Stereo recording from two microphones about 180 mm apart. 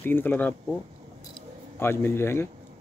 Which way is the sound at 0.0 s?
10° left (ahead or behind).